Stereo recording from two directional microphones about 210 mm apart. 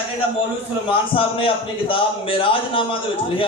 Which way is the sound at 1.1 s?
25° left (ahead or behind).